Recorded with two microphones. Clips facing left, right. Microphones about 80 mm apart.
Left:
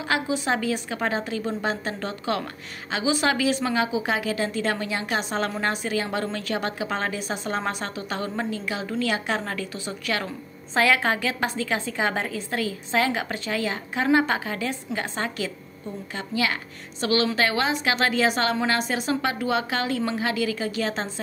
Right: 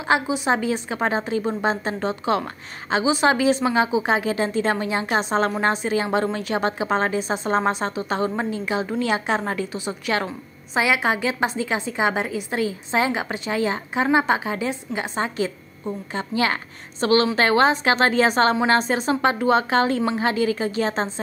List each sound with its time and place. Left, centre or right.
0.1 s a woman's voice: right
16.2 s a woman's voice: right